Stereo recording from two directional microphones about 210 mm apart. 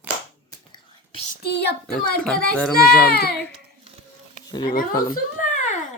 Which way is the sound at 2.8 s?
50° left (ahead or behind).